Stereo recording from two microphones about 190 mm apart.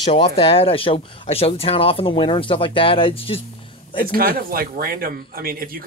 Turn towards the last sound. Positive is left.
turn(degrees=-50)  # may be behind; listen again after turning